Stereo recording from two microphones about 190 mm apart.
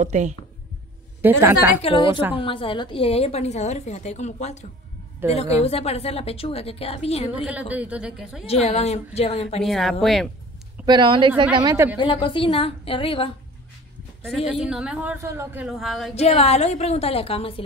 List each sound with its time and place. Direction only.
0.0 s speech: 40° right (ahead or behind)
1.2 s a man's voice: 10° right (ahead or behind)
1.8 s a woman's voice: 30° left (ahead or behind)
7.4 s a man's voice: 5° right (ahead or behind)
8.5 s a woman's voice: 35° left (ahead or behind)
9.6 s speech: centre (ahead or behind)
10.9 s a man's voice: 25° right (ahead or behind)
12.0 s a woman's voice: 25° left (ahead or behind)
14.6 s speech: 5° right (ahead or behind)
16.2 s a woman's voice: 35° left (ahead or behind)